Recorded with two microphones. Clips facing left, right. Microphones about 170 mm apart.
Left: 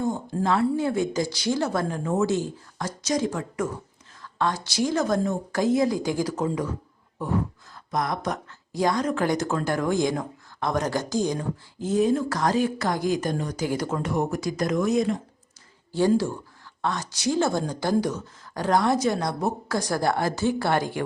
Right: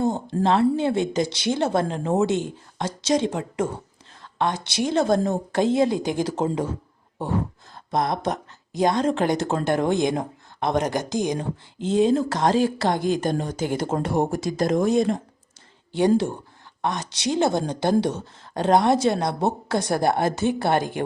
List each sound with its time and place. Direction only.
0.0 s speech: 25° right (ahead or behind)
7.9 s speech: 25° right (ahead or behind)